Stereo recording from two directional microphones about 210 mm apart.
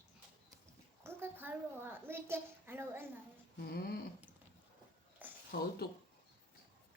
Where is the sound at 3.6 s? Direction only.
45° left (ahead or behind).